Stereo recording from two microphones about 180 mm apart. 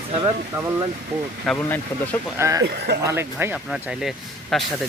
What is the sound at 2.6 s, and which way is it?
Speech, 65° right (ahead or behind).